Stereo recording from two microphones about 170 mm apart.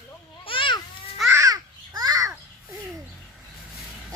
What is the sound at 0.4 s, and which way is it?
Babbling, 30° left (ahead or behind).